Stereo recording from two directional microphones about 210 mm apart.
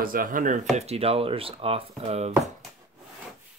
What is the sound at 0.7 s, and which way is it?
Speech, 30° right (ahead or behind).